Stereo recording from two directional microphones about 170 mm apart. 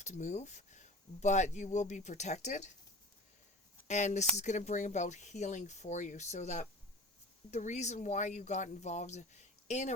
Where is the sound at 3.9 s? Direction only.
45° left (ahead or behind).